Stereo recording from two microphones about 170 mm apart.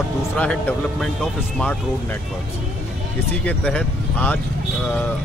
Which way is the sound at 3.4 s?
10° left (ahead or behind).